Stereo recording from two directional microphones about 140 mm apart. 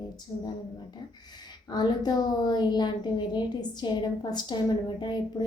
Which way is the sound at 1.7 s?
30° left (ahead or behind).